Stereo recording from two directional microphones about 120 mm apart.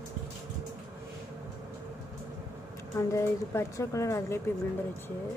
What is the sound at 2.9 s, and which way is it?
A woman's voice, 25° left (ahead or behind).